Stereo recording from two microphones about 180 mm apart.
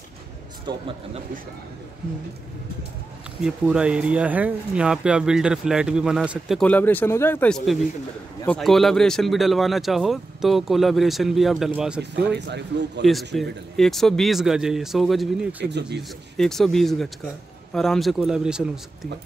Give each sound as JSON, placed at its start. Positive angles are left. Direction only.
{"t": 0.7, "sound": "a man's voice", "side_deg": -30}
{"t": 3.4, "sound": "speech", "side_deg": -5}
{"t": 6.6, "sound": "speech", "side_deg": 10}
{"t": 12.3, "sound": "speech", "side_deg": -70}
{"t": 13.0, "sound": "speech", "side_deg": 0}